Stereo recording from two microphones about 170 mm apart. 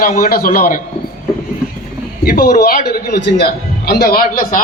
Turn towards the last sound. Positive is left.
turn(degrees=60)  # may be behind; listen again after turning